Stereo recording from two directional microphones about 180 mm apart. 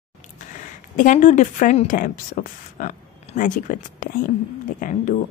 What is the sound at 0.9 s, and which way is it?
Speech, 45° left (ahead or behind).